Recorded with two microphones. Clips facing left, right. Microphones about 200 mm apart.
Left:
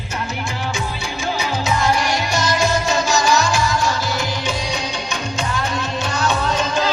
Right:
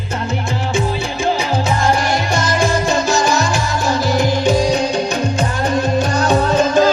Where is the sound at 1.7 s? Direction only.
50° right (ahead or behind).